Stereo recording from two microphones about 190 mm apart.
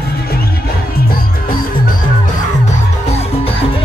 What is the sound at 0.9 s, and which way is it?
Music, 50° left (ahead or behind).